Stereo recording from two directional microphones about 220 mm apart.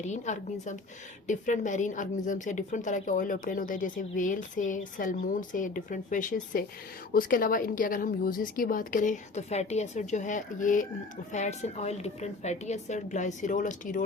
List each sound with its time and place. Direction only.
0.0 s a woman's voice: 30° left (ahead or behind)